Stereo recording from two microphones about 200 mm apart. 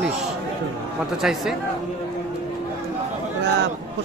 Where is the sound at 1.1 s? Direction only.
Centre (ahead or behind).